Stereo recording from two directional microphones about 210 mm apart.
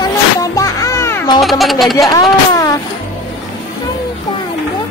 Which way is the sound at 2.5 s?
15° left (ahead or behind).